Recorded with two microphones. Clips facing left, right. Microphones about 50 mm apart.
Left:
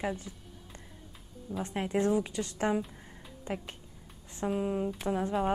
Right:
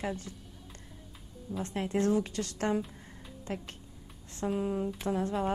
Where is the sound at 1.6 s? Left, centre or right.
Centre.